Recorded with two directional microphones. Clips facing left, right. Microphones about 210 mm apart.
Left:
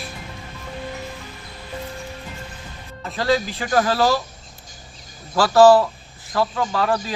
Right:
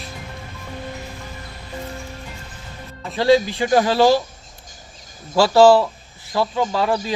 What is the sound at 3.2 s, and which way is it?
Speech, 15° right (ahead or behind).